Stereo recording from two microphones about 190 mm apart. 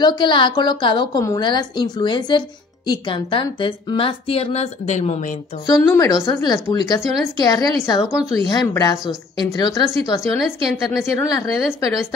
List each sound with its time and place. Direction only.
0.0 s a woman's voice: 25° left (ahead or behind)
5.7 s a woman's voice: 15° left (ahead or behind)
8.1 s a woman's voice: 5° right (ahead or behind)
8.5 s a woman's voice: 20° left (ahead or behind)
10.3 s a woman's voice: centre (ahead or behind)
11.1 s a woman's voice: 20° left (ahead or behind)